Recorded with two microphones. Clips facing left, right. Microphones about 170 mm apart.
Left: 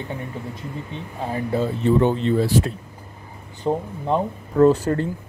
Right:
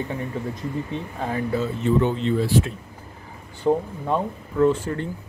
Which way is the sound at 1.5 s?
35° left (ahead or behind).